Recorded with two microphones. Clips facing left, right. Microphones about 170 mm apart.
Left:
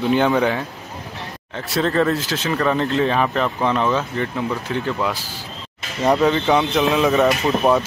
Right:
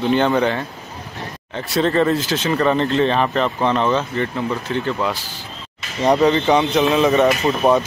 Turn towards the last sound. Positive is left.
turn(degrees=0)  # may be behind; listen again after turning